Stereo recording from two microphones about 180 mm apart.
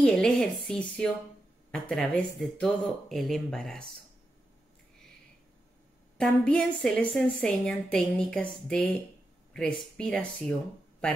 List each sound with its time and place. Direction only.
0.0 s speech: 5° left (ahead or behind)
6.1 s speech: 5° left (ahead or behind)